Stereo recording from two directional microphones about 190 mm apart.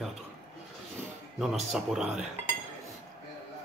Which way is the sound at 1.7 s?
Centre (ahead or behind).